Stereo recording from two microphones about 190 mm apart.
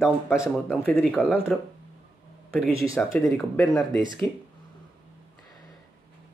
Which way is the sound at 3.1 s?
10° left (ahead or behind).